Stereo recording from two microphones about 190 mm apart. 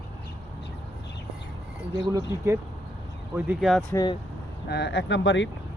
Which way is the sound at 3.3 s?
10° right (ahead or behind).